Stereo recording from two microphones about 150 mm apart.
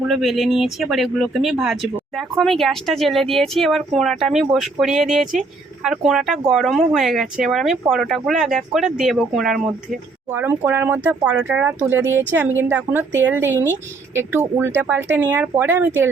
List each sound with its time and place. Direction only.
0.1 s speech: centre (ahead or behind)
10.3 s speech: 15° right (ahead or behind)